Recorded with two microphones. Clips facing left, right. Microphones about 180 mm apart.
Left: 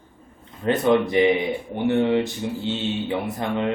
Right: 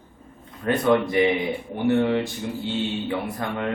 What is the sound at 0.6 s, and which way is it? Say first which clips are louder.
A man's voice: left 1 dB; 20° left (ahead or behind).